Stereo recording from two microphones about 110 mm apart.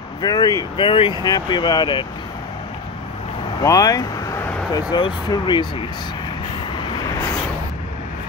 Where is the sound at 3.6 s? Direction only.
35° left (ahead or behind).